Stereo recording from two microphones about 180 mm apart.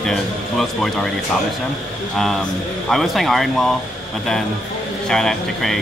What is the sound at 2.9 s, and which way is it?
Speech, centre (ahead or behind).